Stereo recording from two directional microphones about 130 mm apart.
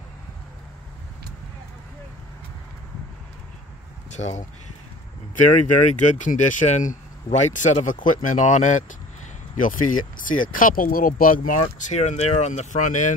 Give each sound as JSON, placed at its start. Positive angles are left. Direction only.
{"t": 4.1, "sound": "speech", "side_deg": 65}
{"t": 5.9, "sound": "speech", "side_deg": 70}
{"t": 9.6, "sound": "speech", "side_deg": 90}